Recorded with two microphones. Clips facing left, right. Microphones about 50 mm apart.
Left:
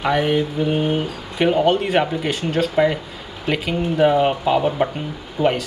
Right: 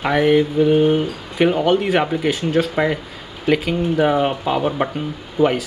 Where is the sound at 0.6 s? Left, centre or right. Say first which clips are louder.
Right 5 dB; centre.